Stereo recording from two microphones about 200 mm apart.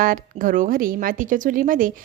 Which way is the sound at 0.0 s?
45° right (ahead or behind).